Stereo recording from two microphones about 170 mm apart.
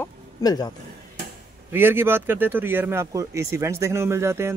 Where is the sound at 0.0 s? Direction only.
25° left (ahead or behind).